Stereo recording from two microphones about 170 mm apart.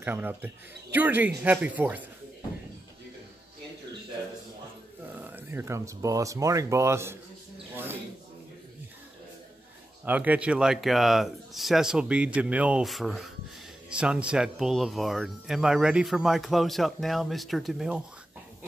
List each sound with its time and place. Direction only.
0.0 s speech: 10° right (ahead or behind)
5.1 s speech: 10° right (ahead or behind)
7.7 s mouse: 10° right (ahead or behind)
10.0 s speech: 10° right (ahead or behind)